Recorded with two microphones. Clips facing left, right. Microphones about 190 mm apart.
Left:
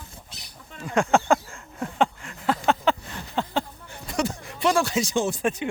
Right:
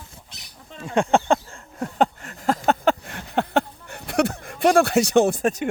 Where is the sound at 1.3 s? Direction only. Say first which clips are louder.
Right 1 dB; 40° right (ahead or behind); by 5.4 s 60° right (ahead or behind).